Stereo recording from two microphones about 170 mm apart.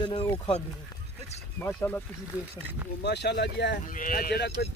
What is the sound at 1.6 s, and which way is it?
Speech, 10° left (ahead or behind).